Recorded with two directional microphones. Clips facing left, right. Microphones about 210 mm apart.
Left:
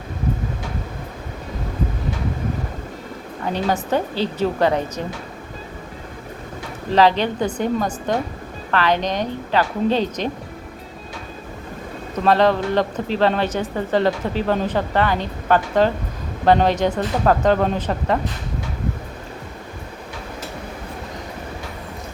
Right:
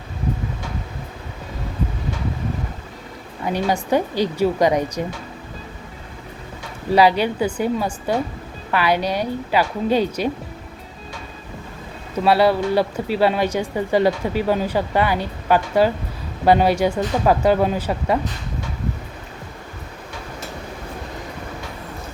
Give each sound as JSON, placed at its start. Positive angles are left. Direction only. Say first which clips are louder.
{"t": 3.4, "sound": "speech", "louder": "right 1 dB", "side_deg": -10}
{"t": 6.9, "sound": "speech", "louder": "right 1 dB", "side_deg": -10}
{"t": 12.1, "sound": "speech", "louder": "even", "side_deg": -10}